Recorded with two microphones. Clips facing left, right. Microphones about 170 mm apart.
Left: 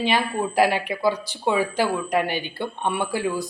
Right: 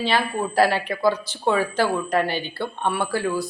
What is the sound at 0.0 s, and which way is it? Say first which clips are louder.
Speech: even; 15° left (ahead or behind).